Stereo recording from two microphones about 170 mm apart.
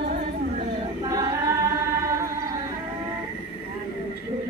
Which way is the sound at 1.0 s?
20° right (ahead or behind).